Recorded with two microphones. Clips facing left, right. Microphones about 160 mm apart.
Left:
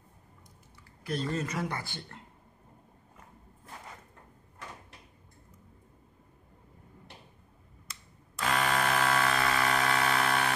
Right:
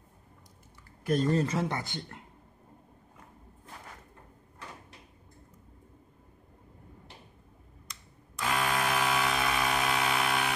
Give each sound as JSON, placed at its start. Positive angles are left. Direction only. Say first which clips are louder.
{"t": 1.0, "sound": "speech", "louder": "right 6 dB", "side_deg": -45}
{"t": 1.4, "sound": "speech", "louder": "right 4 dB", "side_deg": -25}
{"t": 8.4, "sound": "a sound", "louder": "left 1 dB", "side_deg": -5}